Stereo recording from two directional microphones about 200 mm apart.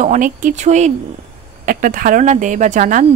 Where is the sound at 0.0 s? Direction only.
40° right (ahead or behind).